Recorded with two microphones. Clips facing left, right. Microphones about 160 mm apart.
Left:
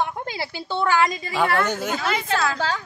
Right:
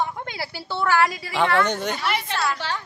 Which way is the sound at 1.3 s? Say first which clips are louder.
Right 1 dB; 5° left (ahead or behind).